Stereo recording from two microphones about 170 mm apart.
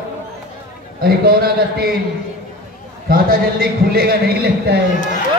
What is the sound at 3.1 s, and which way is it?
A man's voice, 60° right (ahead or behind).